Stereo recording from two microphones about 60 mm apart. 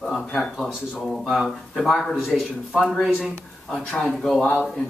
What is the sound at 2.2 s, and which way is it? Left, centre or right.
Speech, centre.